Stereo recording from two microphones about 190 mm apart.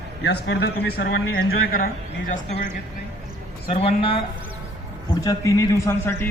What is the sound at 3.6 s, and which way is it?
Speech, 30° left (ahead or behind).